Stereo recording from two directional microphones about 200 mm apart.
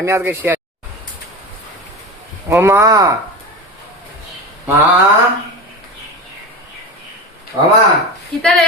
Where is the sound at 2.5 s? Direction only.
15° right (ahead or behind).